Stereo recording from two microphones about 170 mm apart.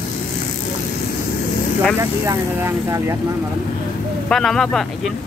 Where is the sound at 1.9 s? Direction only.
15° right (ahead or behind).